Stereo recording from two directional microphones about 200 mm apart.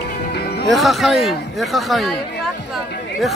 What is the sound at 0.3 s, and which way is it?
Music, 55° left (ahead or behind).